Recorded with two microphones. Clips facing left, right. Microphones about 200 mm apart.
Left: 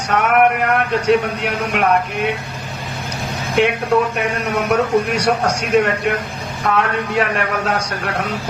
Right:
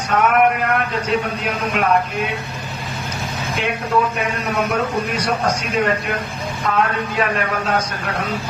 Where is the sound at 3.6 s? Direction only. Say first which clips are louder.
Left 5 dB; 70° left (ahead or behind).